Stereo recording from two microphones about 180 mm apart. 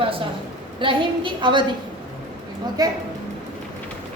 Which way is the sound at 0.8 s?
25° right (ahead or behind).